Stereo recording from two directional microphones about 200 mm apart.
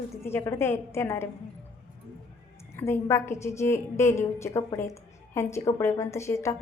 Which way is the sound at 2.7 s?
10° left (ahead or behind).